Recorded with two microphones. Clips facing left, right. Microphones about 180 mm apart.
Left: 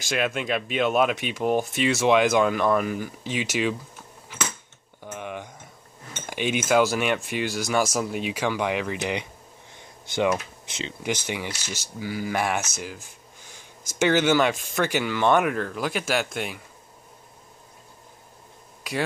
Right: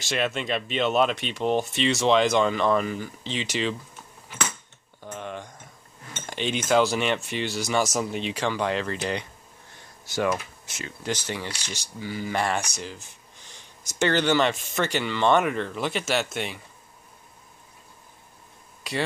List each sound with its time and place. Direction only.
0.1 s speech: 5° left (ahead or behind)
5.0 s a sound: 10° left (ahead or behind)
6.1 s cutlery: 5° left (ahead or behind)
6.7 s speech: 5° left (ahead or behind)
9.8 s a sound: 20° left (ahead or behind)
10.8 s speech: 15° left (ahead or behind)
11.5 s speech: 15° right (ahead or behind)
12.0 s speech: 5° left (ahead or behind)